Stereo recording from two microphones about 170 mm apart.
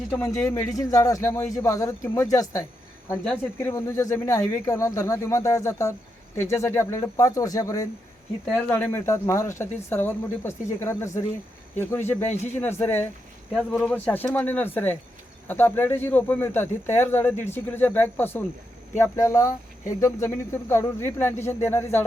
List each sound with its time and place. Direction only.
0.1 s speech: 15° left (ahead or behind)